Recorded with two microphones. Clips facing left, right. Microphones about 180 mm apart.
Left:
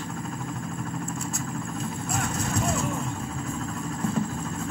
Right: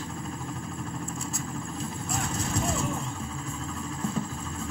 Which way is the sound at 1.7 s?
45° left (ahead or behind).